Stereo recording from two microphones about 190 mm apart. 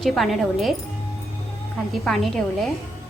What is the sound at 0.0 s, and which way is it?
Speech, centre (ahead or behind).